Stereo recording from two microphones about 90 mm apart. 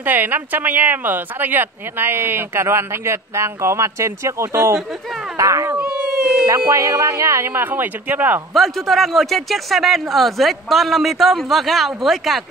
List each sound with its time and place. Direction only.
0.0 s speech: 20° right (ahead or behind); by 5.8 s 35° right (ahead or behind)
5.8 s a sound: 5° right (ahead or behind)
6.7 s speech: 35° right (ahead or behind); by 8.4 s 20° right (ahead or behind)
8.5 s speech: centre (ahead or behind)